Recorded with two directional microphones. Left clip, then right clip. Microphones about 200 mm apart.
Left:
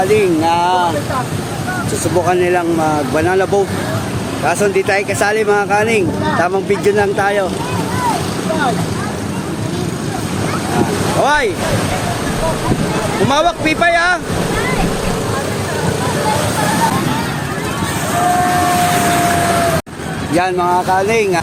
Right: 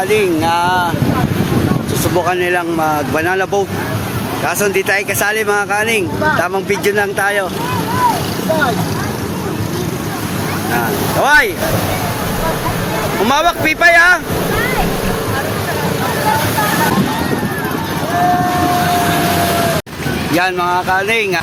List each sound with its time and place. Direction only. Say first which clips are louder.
0.1 s speech: left 1 dB; centre (ahead or behind)
2.2 s speech: left 1 dB; centre (ahead or behind)
4.4 s speech: left 1 dB; centre (ahead or behind)
11.2 s speech: right 4 dB; 5° left (ahead or behind)
13.2 s speech: right 1 dB; 5° left (ahead or behind)
20.3 s speech: left 1 dB; 5° left (ahead or behind)